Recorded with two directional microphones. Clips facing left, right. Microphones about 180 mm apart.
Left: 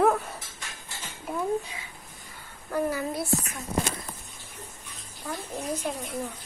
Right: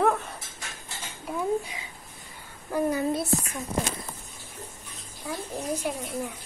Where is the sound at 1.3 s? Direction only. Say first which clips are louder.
Right 1 dB; 5° right (ahead or behind).